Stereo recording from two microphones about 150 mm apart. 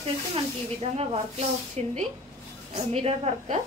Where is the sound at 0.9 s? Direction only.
45° right (ahead or behind).